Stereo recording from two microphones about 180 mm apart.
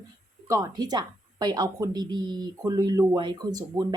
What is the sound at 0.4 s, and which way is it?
Speech, 20° right (ahead or behind).